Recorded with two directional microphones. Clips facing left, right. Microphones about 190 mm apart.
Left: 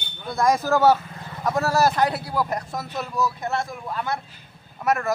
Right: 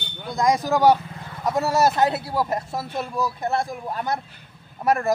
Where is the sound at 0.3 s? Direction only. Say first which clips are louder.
Even; 15° right (ahead or behind).